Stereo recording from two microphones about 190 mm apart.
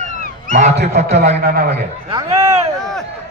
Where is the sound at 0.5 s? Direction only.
35° right (ahead or behind).